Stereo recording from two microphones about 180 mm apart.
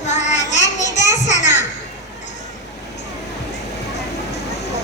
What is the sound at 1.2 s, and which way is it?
Children playing, 40° left (ahead or behind).